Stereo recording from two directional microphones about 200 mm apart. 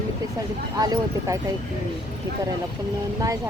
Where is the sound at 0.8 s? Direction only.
15° right (ahead or behind).